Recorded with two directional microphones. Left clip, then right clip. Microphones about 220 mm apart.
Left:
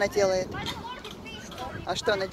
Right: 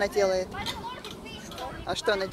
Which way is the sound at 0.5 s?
40° right (ahead or behind).